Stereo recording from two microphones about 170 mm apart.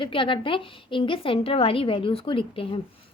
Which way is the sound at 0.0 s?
30° left (ahead or behind).